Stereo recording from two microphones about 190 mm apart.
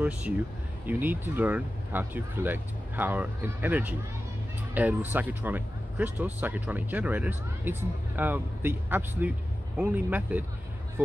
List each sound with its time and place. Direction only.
0.8 s speech: 10° right (ahead or behind)